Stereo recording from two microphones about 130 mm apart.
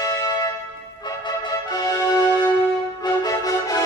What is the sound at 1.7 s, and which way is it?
Music, 30° left (ahead or behind).